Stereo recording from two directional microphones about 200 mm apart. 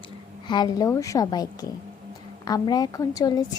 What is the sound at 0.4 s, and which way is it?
A woman's voice, 20° left (ahead or behind).